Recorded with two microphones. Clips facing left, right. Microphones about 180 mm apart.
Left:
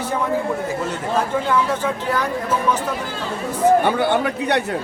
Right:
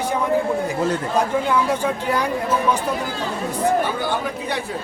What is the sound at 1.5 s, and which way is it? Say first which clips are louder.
Speech: even; 15° right (ahead or behind).